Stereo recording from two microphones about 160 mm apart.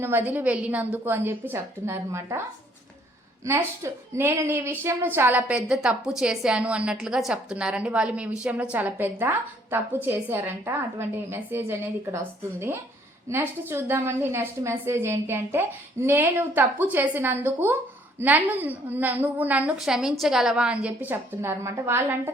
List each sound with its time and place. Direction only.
0.0 s a woman's voice: 10° right (ahead or behind)
4.2 s a woman's voice: 15° right (ahead or behind)